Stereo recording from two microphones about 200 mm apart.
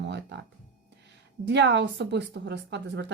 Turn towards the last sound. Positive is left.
turn(degrees=-60)  # may be behind; listen again after turning